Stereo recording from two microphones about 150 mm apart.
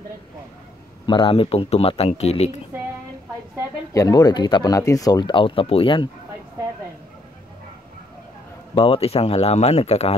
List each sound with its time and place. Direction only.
1.0 s speech: 35° left (ahead or behind)
3.9 s speech: 25° left (ahead or behind)
8.7 s speech: 40° left (ahead or behind)